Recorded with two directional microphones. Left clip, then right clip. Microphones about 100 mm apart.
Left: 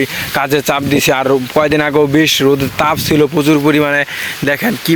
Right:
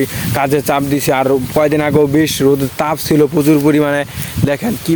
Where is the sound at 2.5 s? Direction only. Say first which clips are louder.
Left 3 dB; 35° right (ahead or behind).